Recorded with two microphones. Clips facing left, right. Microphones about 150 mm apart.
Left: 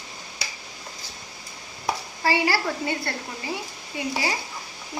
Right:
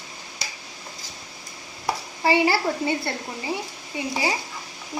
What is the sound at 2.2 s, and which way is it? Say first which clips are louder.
A woman's voice: right 3 dB; 20° right (ahead or behind).